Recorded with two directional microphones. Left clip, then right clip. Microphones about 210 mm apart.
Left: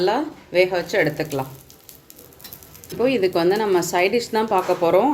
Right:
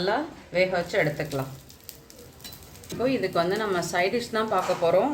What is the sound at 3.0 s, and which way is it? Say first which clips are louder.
Speech: left 6 dB; 40° left (ahead or behind).